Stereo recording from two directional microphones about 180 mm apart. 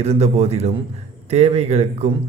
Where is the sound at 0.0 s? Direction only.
35° right (ahead or behind).